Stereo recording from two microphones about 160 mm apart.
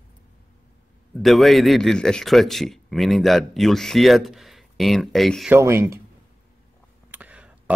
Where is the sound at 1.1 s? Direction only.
Centre (ahead or behind).